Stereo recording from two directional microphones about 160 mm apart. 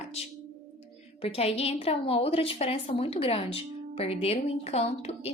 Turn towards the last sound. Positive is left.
turn(degrees=40)  # may be behind; listen again after turning